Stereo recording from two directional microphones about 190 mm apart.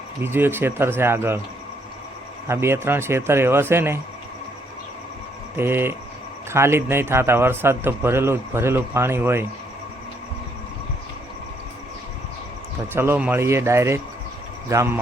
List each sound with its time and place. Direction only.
0.2 s speech: 10° right (ahead or behind)
2.5 s speech: 15° right (ahead or behind)
5.5 s speech: 10° right (ahead or behind)
12.9 s speech: 10° right (ahead or behind)